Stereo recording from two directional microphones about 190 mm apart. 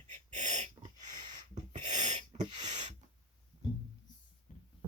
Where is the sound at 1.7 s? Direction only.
40° right (ahead or behind).